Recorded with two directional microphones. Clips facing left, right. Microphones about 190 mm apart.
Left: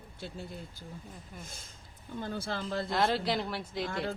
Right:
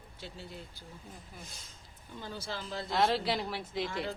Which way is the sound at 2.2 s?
55° left (ahead or behind).